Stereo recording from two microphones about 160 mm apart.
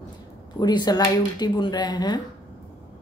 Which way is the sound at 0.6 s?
25° left (ahead or behind).